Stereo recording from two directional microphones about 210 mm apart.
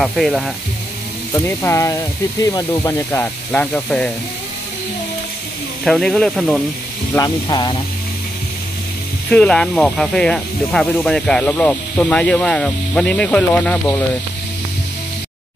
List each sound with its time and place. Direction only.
0.0 s speech: centre (ahead or behind)
1.3 s speech: 10° left (ahead or behind)
5.9 s speech: 5° left (ahead or behind)
7.2 s speech: 15° left (ahead or behind)
9.3 s speech: 5° left (ahead or behind)